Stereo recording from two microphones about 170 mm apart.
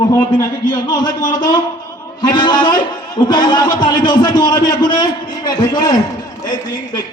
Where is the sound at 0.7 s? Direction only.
25° left (ahead or behind).